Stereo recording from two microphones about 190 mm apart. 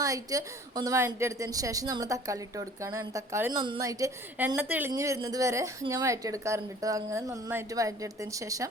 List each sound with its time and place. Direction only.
0.0 s a woman's voice: 20° right (ahead or behind)